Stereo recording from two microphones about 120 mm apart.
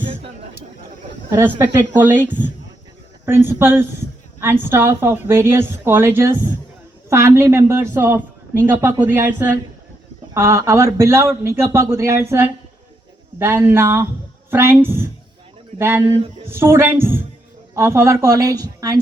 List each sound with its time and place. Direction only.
1.3 s a woman's voice: 25° right (ahead or behind)